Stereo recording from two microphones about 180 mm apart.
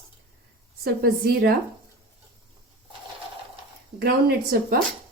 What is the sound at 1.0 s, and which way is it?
Speech, 55° right (ahead or behind).